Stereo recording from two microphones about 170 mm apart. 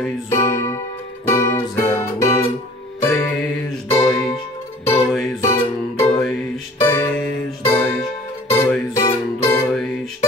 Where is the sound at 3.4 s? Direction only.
Centre (ahead or behind).